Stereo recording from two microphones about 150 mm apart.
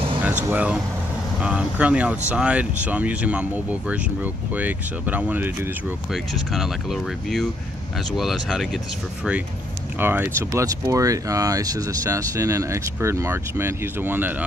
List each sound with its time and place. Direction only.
0.5 s speech: 10° right (ahead or behind)
9.9 s speech: 15° right (ahead or behind)